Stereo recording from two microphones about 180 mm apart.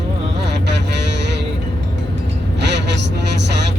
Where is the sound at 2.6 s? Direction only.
70° right (ahead or behind).